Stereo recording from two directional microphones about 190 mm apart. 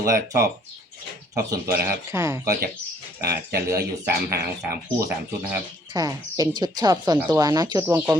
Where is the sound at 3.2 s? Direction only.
55° right (ahead or behind).